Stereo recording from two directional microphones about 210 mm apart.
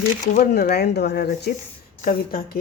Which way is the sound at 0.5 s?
50° left (ahead or behind).